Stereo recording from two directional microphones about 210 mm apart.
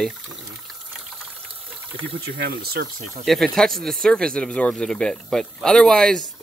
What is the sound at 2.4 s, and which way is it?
Speech, 50° right (ahead or behind).